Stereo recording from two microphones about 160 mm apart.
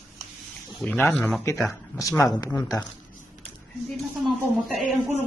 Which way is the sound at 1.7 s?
20° left (ahead or behind).